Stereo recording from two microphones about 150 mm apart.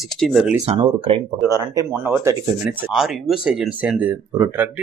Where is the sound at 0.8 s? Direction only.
35° right (ahead or behind).